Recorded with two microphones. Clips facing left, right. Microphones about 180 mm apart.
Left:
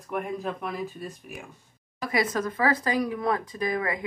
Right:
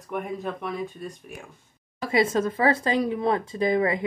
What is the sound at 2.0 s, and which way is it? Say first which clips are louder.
Speech: right 4 dB; 25° right (ahead or behind).